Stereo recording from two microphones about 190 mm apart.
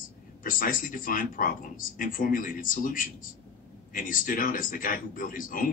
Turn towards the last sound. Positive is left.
turn(degrees=45)  # may be behind; listen again after turning